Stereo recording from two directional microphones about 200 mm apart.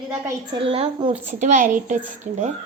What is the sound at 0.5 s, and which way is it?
Speech, 25° right (ahead or behind).